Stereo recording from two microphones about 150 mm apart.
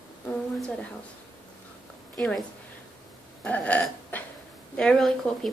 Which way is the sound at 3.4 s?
10° left (ahead or behind).